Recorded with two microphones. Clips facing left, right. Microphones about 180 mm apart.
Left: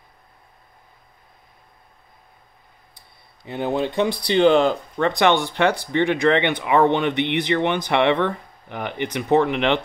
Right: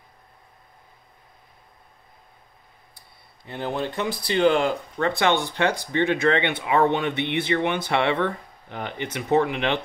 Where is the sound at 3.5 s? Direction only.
20° left (ahead or behind).